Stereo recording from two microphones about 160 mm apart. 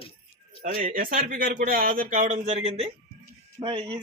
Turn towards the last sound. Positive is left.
turn(degrees=-30)  # may be behind; listen again after turning